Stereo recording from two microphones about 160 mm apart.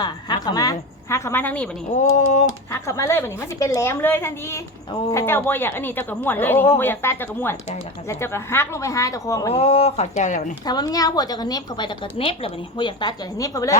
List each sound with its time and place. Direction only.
0.0 s a woman's voice: 25° left (ahead or behind)
2.0 s typing: 50° left (ahead or behind)
2.7 s a woman's voice: 20° left (ahead or behind)
9.5 s speech: 35° left (ahead or behind)
10.7 s a woman's voice: 25° left (ahead or behind)